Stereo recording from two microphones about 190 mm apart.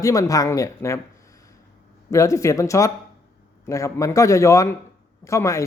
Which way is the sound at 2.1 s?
15° left (ahead or behind).